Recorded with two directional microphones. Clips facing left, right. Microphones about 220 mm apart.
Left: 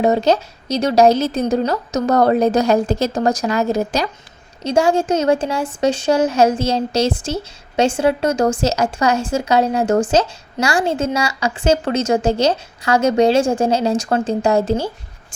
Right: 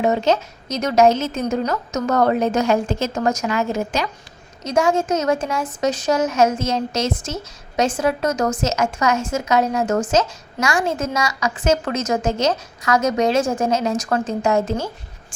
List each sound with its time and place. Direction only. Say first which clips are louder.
0.0 s a woman's voice: left 3 dB; 35° left (ahead or behind)